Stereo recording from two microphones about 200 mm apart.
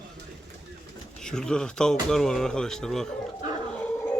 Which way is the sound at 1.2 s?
5° left (ahead or behind).